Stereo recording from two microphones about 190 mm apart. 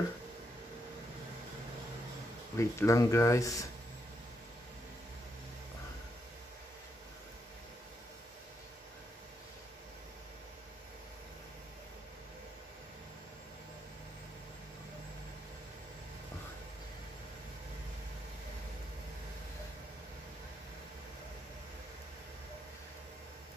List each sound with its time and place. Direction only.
2.5 s speech: 15° left (ahead or behind)